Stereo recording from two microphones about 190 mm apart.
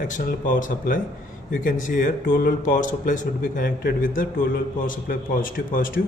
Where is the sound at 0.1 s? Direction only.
50° left (ahead or behind).